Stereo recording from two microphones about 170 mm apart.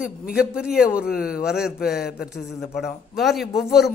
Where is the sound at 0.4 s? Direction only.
5° right (ahead or behind).